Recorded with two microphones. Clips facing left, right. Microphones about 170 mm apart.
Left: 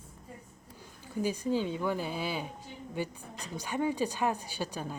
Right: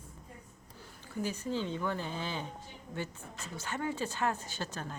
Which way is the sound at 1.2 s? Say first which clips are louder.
Left 5 dB; 15° left (ahead or behind).